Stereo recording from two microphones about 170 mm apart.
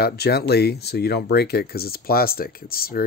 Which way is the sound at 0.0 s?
70° left (ahead or behind).